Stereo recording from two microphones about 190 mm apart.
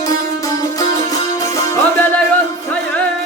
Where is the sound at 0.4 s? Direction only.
20° left (ahead or behind).